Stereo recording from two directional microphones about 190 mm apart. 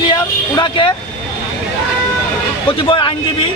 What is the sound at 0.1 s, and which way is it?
Vehicle, 25° left (ahead or behind).